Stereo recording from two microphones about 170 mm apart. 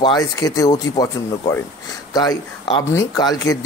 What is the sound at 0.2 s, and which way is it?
Speech, 20° left (ahead or behind).